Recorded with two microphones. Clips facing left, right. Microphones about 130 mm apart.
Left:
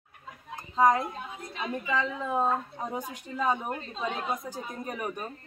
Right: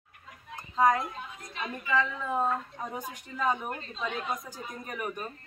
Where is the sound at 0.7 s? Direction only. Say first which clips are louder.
Left 2 dB; 20° left (ahead or behind).